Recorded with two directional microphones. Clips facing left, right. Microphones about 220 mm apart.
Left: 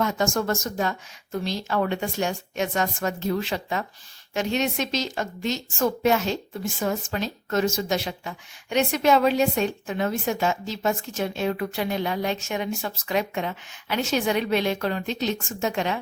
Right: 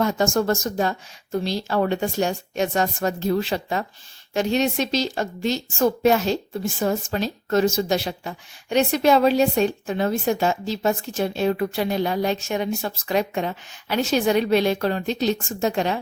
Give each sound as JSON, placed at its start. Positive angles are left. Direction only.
{"t": 0.0, "sound": "a woman's voice", "side_deg": -35}